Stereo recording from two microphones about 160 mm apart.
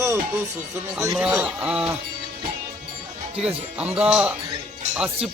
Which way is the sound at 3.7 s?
5° right (ahead or behind).